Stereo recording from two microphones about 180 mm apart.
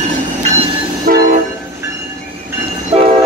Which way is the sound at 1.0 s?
55° right (ahead or behind).